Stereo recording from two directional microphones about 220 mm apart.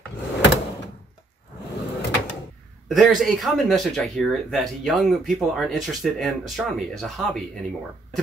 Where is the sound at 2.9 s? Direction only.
Centre (ahead or behind).